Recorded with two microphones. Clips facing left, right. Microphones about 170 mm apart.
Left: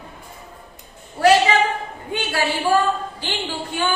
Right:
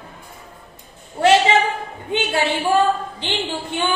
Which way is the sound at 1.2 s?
25° right (ahead or behind).